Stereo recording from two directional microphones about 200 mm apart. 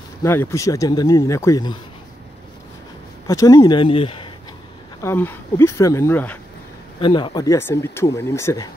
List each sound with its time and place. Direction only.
0.2 s speech: 15° left (ahead or behind)
3.3 s speech: 15° left (ahead or behind)
5.0 s speech: 10° left (ahead or behind)
7.0 s speech: 25° left (ahead or behind)